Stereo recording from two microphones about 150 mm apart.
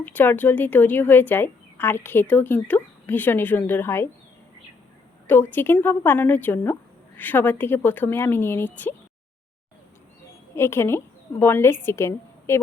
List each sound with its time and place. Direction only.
0.0 s a woman's voice: 10° left (ahead or behind)
5.3 s a woman's voice: 15° left (ahead or behind)
10.5 s a woman's voice: 15° left (ahead or behind)